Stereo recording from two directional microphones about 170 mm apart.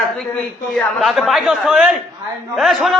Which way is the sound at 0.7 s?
Centre (ahead or behind).